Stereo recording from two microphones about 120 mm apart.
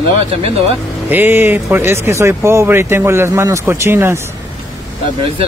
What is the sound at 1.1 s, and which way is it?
Speech, 15° right (ahead or behind).